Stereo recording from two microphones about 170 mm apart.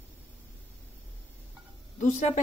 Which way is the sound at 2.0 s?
45° left (ahead or behind).